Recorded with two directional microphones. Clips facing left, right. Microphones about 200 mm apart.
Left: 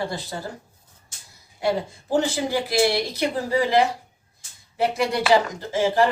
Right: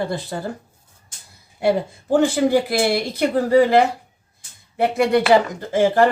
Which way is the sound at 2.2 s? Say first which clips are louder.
Right 8 dB; 55° right (ahead or behind).